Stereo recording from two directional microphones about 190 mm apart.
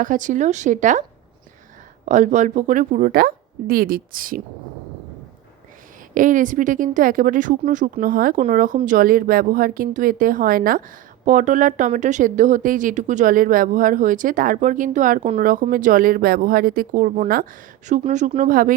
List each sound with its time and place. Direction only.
0.0 s a woman's voice: 45° right (ahead or behind)
2.0 s speech: 40° right (ahead or behind)
6.1 s speech: 45° right (ahead or behind)